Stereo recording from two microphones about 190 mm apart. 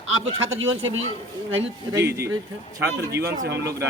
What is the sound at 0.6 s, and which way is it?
Speech, 90° right.